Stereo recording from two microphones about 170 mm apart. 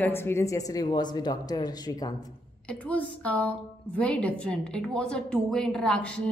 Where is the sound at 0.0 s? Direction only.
15° left (ahead or behind).